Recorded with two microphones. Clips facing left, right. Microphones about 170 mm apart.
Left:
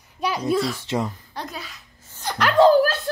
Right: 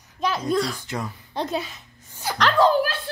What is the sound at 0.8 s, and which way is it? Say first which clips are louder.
Speech: left 6 dB; 25° left (ahead or behind).